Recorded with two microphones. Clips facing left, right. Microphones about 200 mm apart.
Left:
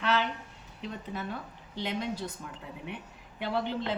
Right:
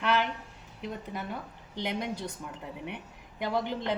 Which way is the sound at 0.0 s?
10° right (ahead or behind).